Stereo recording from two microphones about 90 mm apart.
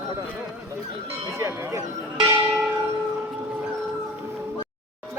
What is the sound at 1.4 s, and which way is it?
Speech, 30° right (ahead or behind).